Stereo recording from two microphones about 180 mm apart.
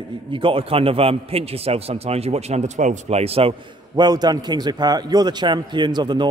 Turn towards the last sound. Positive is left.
turn(degrees=-25)  # may be behind; listen again after turning